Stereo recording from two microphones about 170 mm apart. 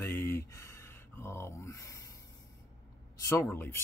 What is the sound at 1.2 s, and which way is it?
Speech, 15° left (ahead or behind).